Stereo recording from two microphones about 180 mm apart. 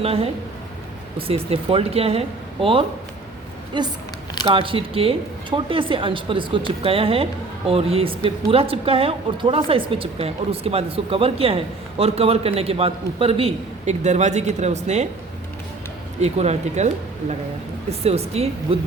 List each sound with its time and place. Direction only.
0.0 s speech: 35° right (ahead or behind)
1.3 s speech: 35° right (ahead or behind)
16.2 s speech: 35° right (ahead or behind)